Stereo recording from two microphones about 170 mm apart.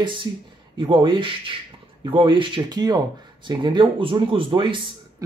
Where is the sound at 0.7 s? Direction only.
30° right (ahead or behind).